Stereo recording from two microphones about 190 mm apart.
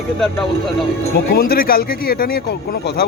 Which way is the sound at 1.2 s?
50° left (ahead or behind).